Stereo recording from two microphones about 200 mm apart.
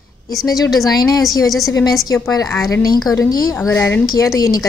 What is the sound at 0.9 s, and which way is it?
A woman's voice, 20° left (ahead or behind).